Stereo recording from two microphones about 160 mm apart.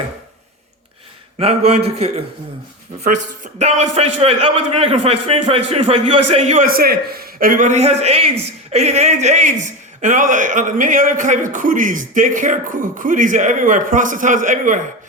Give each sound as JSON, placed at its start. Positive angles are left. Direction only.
{"t": 1.4, "sound": "a man's voice", "side_deg": -40}
{"t": 6.7, "sound": "a man's voice", "side_deg": -70}